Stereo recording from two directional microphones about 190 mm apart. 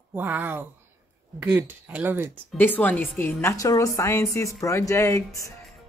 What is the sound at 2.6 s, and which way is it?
Speech, 10° left (ahead or behind).